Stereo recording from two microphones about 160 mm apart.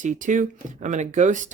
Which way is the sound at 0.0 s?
50° right (ahead or behind).